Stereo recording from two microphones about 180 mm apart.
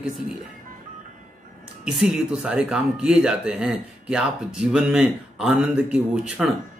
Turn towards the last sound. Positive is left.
turn(degrees=-5)  # may be behind; listen again after turning